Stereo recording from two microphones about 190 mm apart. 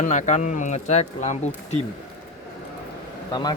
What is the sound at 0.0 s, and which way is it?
Speech, 40° left (ahead or behind).